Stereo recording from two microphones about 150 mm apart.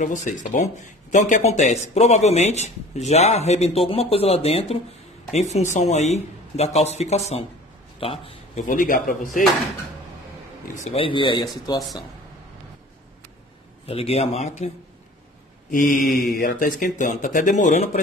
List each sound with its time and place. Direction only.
0.0 s a man's voice: 55° left (ahead or behind); by 8.6 s 40° left (ahead or behind)
8.6 s speech: 65° left (ahead or behind)
10.7 s speech: 40° left (ahead or behind); by 11.8 s 25° left (ahead or behind)
13.8 s speech: 40° left (ahead or behind)
16.3 s speech: 70° left (ahead or behind); by 18.0 s 55° left (ahead or behind)